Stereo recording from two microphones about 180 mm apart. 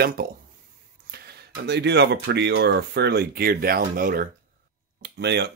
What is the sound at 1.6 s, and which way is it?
Speech, 70° right (ahead or behind).